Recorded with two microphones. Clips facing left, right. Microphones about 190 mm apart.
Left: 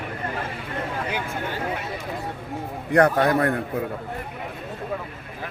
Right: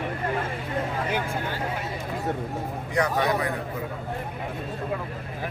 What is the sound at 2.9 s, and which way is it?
Speech, 60° left (ahead or behind).